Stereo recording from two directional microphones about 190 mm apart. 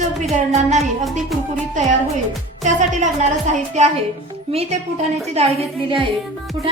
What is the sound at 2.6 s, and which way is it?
Speech, 40° right (ahead or behind).